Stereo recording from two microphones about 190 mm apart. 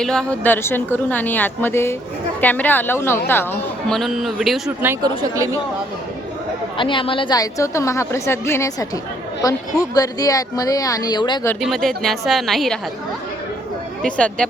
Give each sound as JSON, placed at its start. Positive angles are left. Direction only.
{"t": 0.0, "sound": "a woman's voice", "side_deg": 5}
{"t": 5.0, "sound": "a woman's voice", "side_deg": -15}
{"t": 6.7, "sound": "a woman's voice", "side_deg": 25}
{"t": 11.6, "sound": "speech", "side_deg": 0}
{"t": 14.0, "sound": "speech", "side_deg": 5}